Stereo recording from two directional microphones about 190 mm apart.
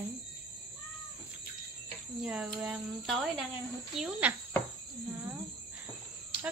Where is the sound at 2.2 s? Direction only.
5° right (ahead or behind).